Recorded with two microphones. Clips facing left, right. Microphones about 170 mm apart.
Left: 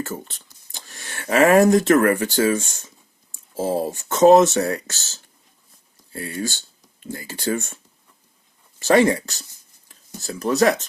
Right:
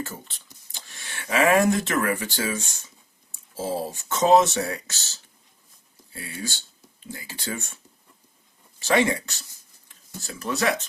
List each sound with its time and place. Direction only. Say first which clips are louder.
0.0 s speech: left 5 dB; 45° left (ahead or behind)
6.1 s speech: left 7 dB; 45° left (ahead or behind)
8.8 s speech: left 6 dB; 45° left (ahead or behind)